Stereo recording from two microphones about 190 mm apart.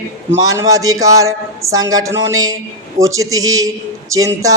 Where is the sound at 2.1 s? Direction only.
75° right (ahead or behind).